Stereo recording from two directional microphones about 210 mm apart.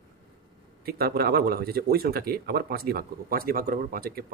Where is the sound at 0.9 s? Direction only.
45° right (ahead or behind).